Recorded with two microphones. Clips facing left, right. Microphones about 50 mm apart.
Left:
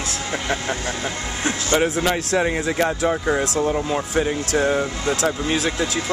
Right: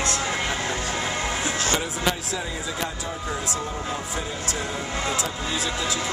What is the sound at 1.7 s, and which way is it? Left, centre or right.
Speech, left.